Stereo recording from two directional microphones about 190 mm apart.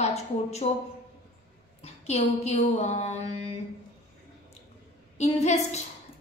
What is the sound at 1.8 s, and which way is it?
A woman's voice, 35° left (ahead or behind).